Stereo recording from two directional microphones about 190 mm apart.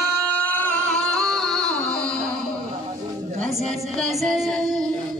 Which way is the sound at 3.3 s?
35° right (ahead or behind).